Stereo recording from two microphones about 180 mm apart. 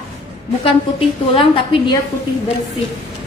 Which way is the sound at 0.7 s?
30° left (ahead or behind).